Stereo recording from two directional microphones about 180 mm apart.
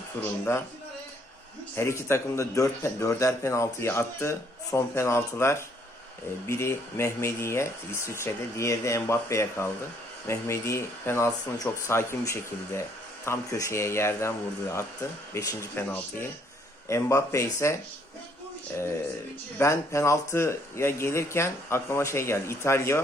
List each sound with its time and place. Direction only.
0.2 s speech: 15° left (ahead or behind)
1.7 s speech: 15° left (ahead or behind)
19.5 s speech: 15° left (ahead or behind)